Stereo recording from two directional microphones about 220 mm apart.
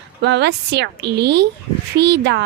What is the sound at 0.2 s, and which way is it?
A woman's voice, 50° right (ahead or behind).